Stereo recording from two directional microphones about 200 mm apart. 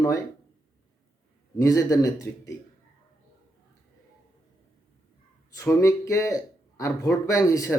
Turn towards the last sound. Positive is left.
turn(degrees=15)  # may be behind; listen again after turning